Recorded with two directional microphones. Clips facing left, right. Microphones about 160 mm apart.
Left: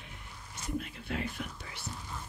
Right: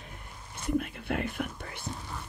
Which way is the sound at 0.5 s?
55° right (ahead or behind).